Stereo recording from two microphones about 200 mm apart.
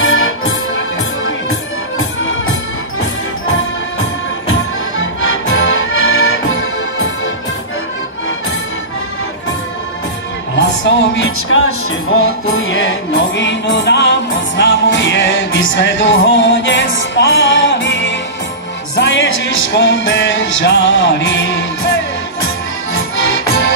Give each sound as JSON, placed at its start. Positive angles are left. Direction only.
{"t": 0.0, "sound": "music", "side_deg": 80}
{"t": 4.9, "sound": "music", "side_deg": 80}
{"t": 10.5, "sound": "music", "side_deg": 70}